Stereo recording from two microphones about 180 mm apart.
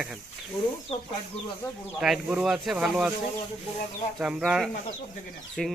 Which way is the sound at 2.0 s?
5° right (ahead or behind).